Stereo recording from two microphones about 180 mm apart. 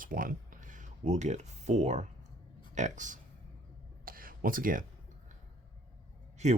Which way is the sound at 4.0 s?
50° right (ahead or behind).